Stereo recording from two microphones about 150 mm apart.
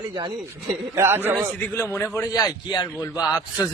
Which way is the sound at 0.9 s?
15° right (ahead or behind).